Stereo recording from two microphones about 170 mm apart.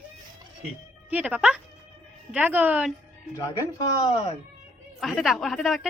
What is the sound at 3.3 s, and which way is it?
Speech, 20° left (ahead or behind).